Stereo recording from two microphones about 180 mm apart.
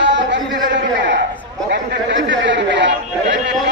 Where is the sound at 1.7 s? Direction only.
75° right (ahead or behind).